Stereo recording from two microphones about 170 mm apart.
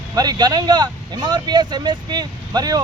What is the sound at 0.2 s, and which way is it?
A man's voice, 25° right (ahead or behind).